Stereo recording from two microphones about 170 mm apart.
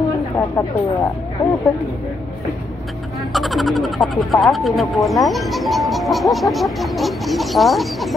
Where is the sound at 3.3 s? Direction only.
Centre (ahead or behind).